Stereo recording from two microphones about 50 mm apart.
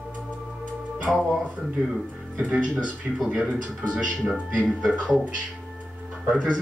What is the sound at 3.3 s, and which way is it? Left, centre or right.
Speech, right.